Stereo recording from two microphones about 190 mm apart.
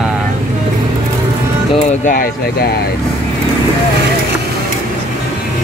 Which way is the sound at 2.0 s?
45° left (ahead or behind).